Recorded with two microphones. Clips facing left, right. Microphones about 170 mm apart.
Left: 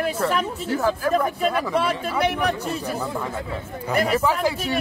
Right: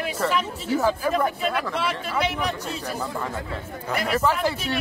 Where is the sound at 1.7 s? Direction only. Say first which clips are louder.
Left 4 dB; 50° left (ahead or behind).